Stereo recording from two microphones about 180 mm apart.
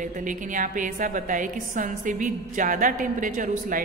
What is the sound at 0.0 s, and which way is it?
A woman's voice, 45° right (ahead or behind).